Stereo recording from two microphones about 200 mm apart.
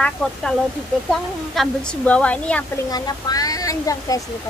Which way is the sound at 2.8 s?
20° left (ahead or behind).